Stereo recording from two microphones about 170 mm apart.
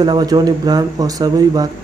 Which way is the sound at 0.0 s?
25° right (ahead or behind).